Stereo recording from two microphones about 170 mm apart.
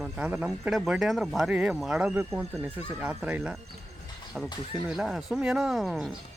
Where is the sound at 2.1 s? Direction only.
15° right (ahead or behind).